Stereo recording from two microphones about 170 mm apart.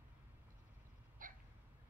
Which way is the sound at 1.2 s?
55° right (ahead or behind).